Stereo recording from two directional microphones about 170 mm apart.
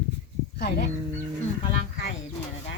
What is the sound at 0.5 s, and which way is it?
Speech, 75° left (ahead or behind).